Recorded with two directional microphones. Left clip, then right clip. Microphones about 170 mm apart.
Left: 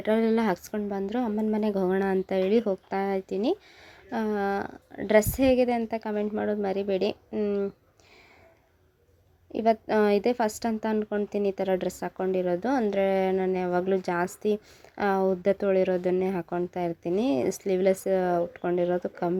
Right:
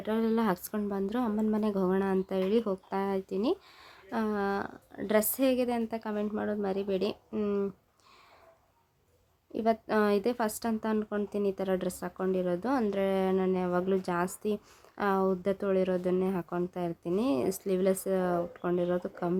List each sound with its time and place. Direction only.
0.0 s speech: 30° left (ahead or behind)
0.4 s a woman's voice: 5° left (ahead or behind)
9.5 s a woman's voice: 15° left (ahead or behind)